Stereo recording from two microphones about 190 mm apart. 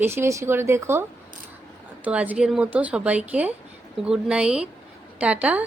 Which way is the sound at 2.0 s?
10° right (ahead or behind).